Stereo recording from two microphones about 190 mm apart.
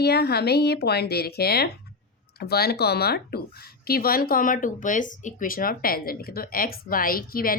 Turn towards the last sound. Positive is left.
turn(degrees=50)  # may be behind; listen again after turning